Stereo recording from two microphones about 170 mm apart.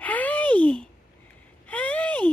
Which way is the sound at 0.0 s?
10° left (ahead or behind).